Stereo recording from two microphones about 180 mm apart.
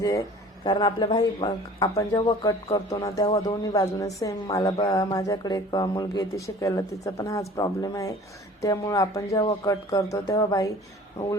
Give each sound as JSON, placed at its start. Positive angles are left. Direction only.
{"t": 0.6, "sound": "a woman's voice", "side_deg": 25}